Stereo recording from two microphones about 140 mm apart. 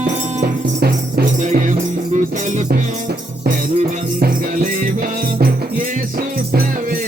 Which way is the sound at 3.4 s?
85° right.